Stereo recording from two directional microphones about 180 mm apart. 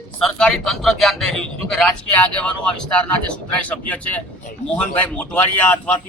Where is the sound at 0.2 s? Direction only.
5° left (ahead or behind).